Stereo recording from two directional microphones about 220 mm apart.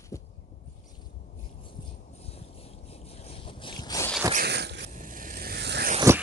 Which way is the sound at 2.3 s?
25° left (ahead or behind).